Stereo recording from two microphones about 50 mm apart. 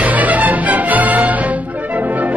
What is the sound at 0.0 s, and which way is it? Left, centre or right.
Music, right.